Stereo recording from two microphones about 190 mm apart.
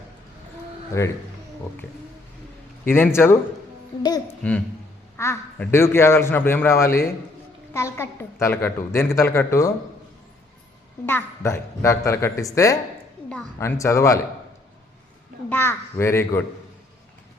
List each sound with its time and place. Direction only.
0.9 s a woman's voice: 15° left (ahead or behind)
2.8 s a woman's voice: 10° left (ahead or behind)
4.4 s a woman's voice: 5° left (ahead or behind)
11.0 s a woman's voice: 10° left (ahead or behind)
15.4 s a woman's voice: 10° left (ahead or behind)